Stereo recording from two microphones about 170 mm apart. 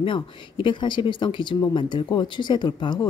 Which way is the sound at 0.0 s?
30° left (ahead or behind).